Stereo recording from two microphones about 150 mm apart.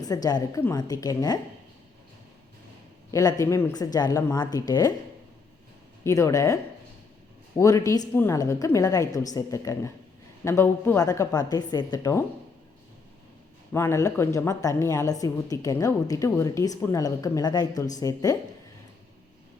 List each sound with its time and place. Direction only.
0.0 s a woman's voice: 25° left (ahead or behind)
3.1 s a woman's voice: 20° left (ahead or behind)
6.1 s a woman's voice: 20° left (ahead or behind)
13.7 s a woman's voice: 20° left (ahead or behind)